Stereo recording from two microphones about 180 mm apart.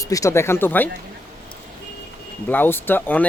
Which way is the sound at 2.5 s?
10° left (ahead or behind).